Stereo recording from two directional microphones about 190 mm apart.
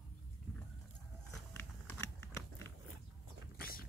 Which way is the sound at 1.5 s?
10° left (ahead or behind).